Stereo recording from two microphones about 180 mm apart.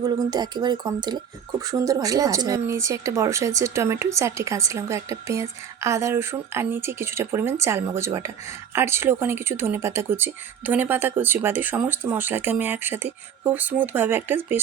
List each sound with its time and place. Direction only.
0.3 s speech: 25° right (ahead or behind)